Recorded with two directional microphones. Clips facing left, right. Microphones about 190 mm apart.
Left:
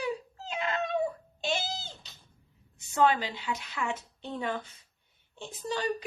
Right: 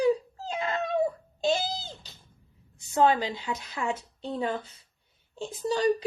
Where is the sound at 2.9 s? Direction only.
40° right (ahead or behind).